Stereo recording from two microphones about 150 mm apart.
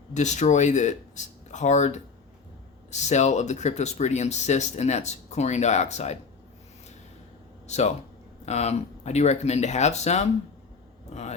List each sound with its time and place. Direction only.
0.1 s speech: 50° left (ahead or behind)
7.7 s speech: 50° left (ahead or behind)